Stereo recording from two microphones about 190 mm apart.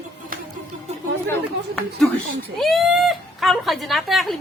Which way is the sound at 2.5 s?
Centre (ahead or behind).